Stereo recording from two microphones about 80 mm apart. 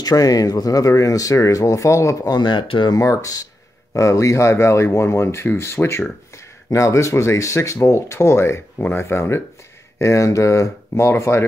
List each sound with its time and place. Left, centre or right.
0.0 s speech: left
2.2 s speech: left
2.9 s speech: left